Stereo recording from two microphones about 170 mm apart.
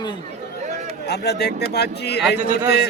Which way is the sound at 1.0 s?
75° left (ahead or behind).